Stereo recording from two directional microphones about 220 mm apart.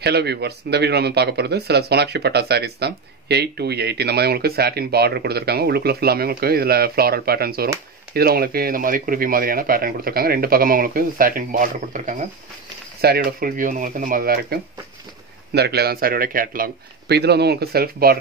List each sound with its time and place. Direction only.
0.0 s speech: 50° right (ahead or behind)
13.0 s speech: 45° right (ahead or behind)